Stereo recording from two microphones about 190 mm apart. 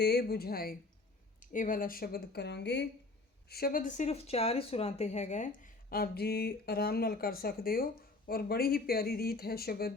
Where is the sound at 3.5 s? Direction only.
50° left (ahead or behind).